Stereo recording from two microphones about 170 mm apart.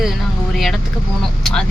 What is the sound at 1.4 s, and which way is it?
Speech, 5° left (ahead or behind).